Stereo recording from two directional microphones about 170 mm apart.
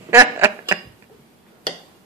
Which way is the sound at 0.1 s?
15° right (ahead or behind).